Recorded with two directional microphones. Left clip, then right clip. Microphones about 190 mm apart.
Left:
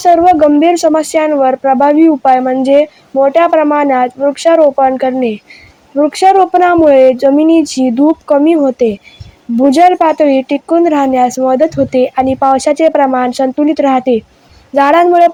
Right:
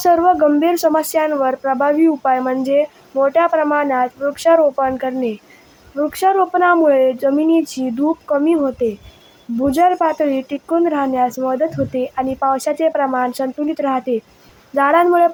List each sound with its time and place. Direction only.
0.0 s speech: 20° left (ahead or behind)